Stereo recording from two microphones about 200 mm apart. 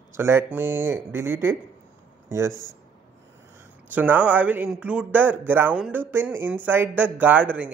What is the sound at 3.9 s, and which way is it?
Speech, 10° right (ahead or behind).